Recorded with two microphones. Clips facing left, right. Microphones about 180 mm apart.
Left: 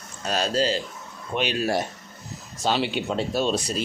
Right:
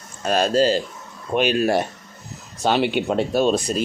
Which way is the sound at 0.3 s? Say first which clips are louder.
Right 6 dB; 50° right (ahead or behind).